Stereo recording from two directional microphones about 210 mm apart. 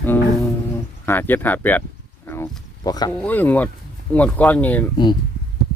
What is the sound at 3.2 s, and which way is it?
Speech, 5° left (ahead or behind).